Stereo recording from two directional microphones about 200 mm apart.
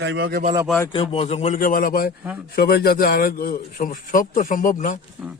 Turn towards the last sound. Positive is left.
turn(degrees=40)  # may be behind; listen again after turning